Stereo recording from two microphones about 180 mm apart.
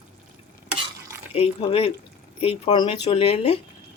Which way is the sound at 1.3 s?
35° left (ahead or behind).